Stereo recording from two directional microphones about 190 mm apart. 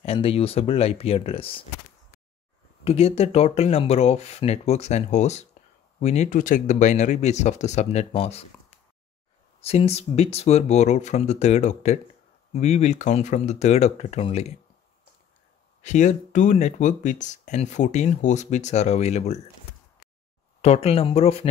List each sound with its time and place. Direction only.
0.0 s speech: 30° left (ahead or behind)
2.8 s speech: 30° left (ahead or behind)
15.8 s speech: 40° left (ahead or behind)
20.6 s speech: 35° left (ahead or behind)